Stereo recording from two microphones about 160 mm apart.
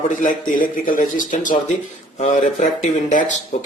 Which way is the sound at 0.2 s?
55° left (ahead or behind).